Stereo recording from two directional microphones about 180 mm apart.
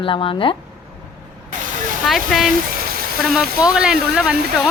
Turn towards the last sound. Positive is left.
turn(degrees=-5)  # may be behind; listen again after turning